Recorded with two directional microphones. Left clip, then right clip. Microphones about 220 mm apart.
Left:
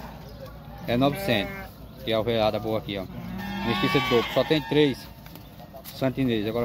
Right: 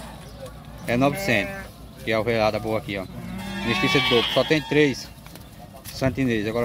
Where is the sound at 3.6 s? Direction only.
40° right (ahead or behind).